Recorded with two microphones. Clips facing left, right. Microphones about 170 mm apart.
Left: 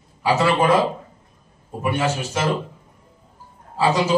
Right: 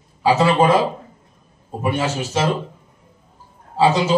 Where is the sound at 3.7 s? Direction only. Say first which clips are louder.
Right 3 dB; 25° right (ahead or behind).